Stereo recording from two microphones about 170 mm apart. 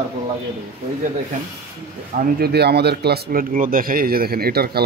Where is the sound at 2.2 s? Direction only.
65° right (ahead or behind).